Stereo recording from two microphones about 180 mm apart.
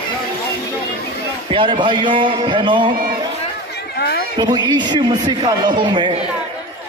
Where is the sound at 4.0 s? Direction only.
60° left (ahead or behind).